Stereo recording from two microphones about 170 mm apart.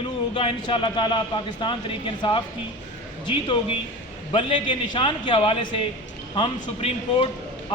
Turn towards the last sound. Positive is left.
turn(degrees=30)  # may be behind; listen again after turning